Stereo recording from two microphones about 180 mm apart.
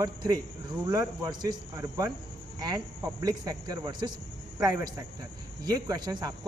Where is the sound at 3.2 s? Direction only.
20° right (ahead or behind).